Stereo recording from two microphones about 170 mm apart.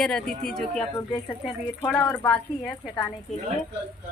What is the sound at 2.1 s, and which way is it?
Speech, 5° left (ahead or behind).